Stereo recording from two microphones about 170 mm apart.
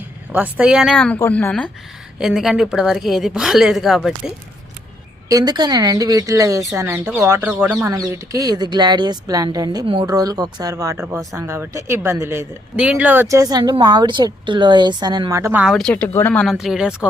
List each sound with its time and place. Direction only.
0.3 s a woman's voice: 10° right (ahead or behind)
5.3 s speech: 25° right (ahead or behind)
15.6 s a woman's voice: centre (ahead or behind)